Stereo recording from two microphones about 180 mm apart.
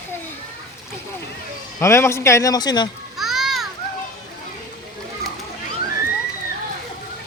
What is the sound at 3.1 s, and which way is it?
Children playing, centre (ahead or behind).